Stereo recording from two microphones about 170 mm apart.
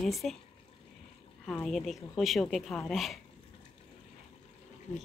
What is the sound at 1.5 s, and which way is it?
Speech, 5° left (ahead or behind).